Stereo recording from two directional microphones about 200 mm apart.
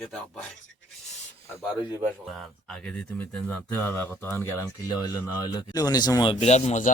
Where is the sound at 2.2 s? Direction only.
Centre (ahead or behind); by 6.9 s 35° left (ahead or behind).